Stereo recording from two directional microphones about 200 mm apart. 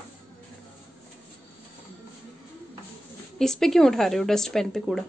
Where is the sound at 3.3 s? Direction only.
Centre (ahead or behind).